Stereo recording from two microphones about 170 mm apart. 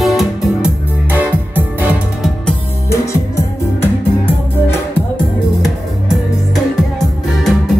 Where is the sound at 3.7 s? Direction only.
10° left (ahead or behind).